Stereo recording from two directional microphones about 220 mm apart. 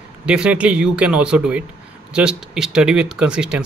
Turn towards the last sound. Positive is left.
turn(degrees=-5)  # may be behind; listen again after turning